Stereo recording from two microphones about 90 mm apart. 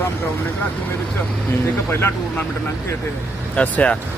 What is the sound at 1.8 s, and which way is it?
Speech, 25° left (ahead or behind).